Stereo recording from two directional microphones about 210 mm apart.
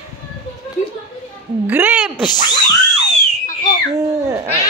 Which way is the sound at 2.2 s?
20° left (ahead or behind).